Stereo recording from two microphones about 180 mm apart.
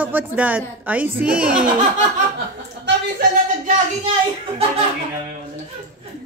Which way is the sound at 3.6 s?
40° right (ahead or behind).